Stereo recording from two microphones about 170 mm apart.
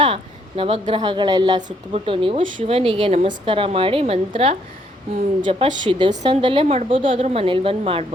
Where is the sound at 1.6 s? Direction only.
45° right (ahead or behind).